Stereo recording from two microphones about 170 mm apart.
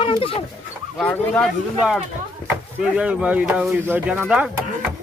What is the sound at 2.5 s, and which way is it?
Speech, 5° right (ahead or behind).